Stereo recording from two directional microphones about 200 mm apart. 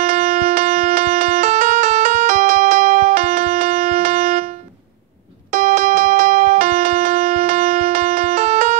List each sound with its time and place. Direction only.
0.0 s music: 35° right (ahead or behind)